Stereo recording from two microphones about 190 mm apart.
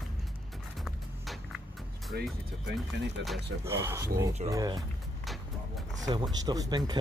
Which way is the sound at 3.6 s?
15° right (ahead or behind).